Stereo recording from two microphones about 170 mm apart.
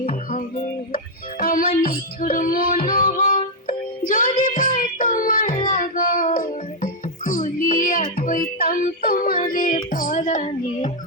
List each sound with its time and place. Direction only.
0.1 s music: 55° left (ahead or behind)